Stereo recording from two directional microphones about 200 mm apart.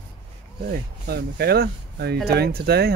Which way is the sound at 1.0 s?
50° right (ahead or behind).